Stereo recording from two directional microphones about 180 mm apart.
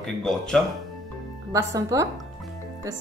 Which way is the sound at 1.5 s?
20° right (ahead or behind).